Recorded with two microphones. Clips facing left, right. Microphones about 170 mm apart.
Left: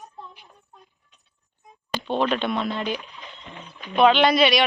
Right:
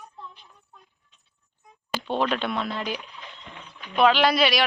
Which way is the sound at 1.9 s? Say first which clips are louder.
Left 2 dB; 10° right (ahead or behind).